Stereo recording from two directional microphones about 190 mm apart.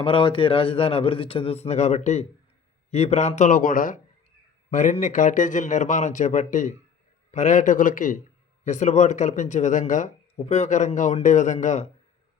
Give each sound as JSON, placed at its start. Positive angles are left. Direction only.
{"t": 0.0, "sound": "a man's voice", "side_deg": 25}